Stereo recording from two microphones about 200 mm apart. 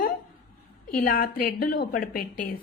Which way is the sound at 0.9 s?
45° left (ahead or behind).